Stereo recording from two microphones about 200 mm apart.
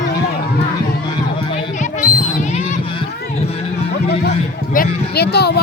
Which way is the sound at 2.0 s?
40° left (ahead or behind).